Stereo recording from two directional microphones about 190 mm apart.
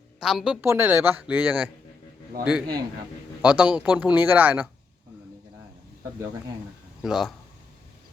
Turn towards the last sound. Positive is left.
turn(degrees=0)  # may be behind; listen again after turning